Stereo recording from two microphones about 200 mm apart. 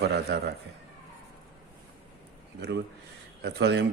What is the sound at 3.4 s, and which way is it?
Speech, 55° right (ahead or behind).